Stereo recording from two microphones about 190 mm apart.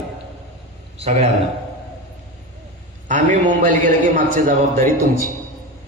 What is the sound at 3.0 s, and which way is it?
A man's voice, 40° right (ahead or behind).